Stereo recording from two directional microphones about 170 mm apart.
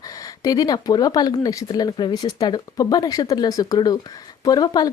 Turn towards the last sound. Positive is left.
turn(degrees=25)  # may be behind; listen again after turning